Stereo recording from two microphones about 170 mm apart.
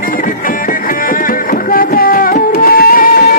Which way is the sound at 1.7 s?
60° left (ahead or behind).